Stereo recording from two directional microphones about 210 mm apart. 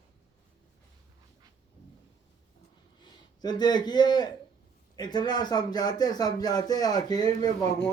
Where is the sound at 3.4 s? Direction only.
20° left (ahead or behind).